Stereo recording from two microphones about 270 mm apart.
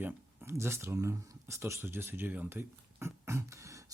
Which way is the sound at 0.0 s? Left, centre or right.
Centre.